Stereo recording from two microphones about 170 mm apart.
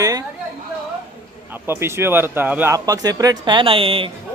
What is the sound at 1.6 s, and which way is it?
Speech, 15° right (ahead or behind).